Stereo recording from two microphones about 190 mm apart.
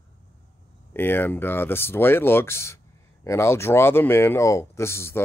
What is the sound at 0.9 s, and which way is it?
Speech, 10° left (ahead or behind).